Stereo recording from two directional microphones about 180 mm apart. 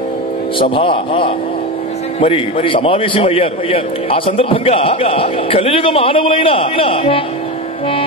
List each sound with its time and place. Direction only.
0.6 s a man's voice: 30° left (ahead or behind)